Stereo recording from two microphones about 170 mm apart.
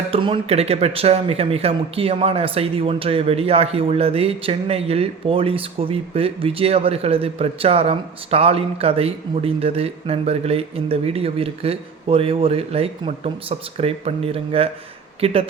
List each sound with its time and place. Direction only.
0.1 s speech: 30° right (ahead or behind)